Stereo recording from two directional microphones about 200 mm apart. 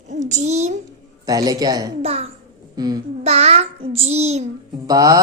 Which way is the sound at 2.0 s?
30° right (ahead or behind).